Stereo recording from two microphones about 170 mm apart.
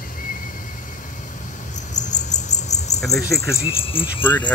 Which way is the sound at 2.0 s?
45° left (ahead or behind).